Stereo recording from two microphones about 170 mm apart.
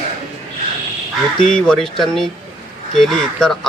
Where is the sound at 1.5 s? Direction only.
5° left (ahead or behind).